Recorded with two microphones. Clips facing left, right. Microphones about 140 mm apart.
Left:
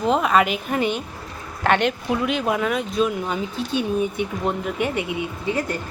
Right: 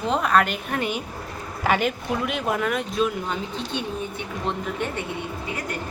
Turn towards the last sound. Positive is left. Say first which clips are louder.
# left 7 dB
turn(degrees=30)  # may be behind; listen again after turning